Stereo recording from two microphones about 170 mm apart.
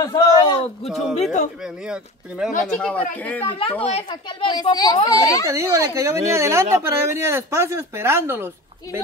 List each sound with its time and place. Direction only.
0.0 s speech: 25° left (ahead or behind)
0.8 s speech: centre (ahead or behind)
2.6 s speech: 5° left (ahead or behind)
3.4 s speech: 30° left (ahead or behind)
5.5 s speech: 15° right (ahead or behind)